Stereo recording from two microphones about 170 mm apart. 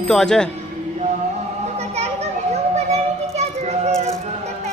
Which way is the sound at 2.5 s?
40° right (ahead or behind).